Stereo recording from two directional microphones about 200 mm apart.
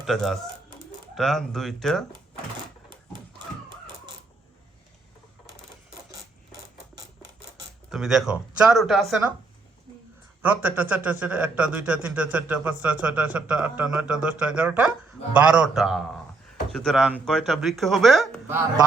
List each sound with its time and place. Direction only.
0.0 s speech: centre (ahead or behind)
3.7 s crow: 25° right (ahead or behind)
7.9 s speech: centre (ahead or behind)
10.4 s a man's voice: 10° right (ahead or behind)